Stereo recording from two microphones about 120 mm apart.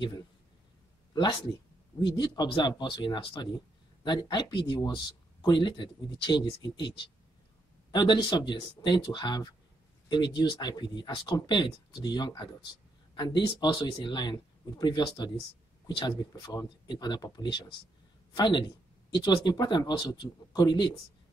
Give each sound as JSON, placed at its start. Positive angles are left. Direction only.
{"t": 2.0, "sound": "speech", "side_deg": 40}
{"t": 7.9, "sound": "speech", "side_deg": 40}